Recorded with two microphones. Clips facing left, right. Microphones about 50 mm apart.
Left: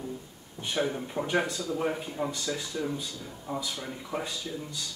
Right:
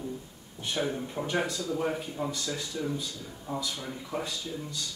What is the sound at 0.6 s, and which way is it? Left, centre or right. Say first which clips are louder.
A man's voice: left 1 dB; centre.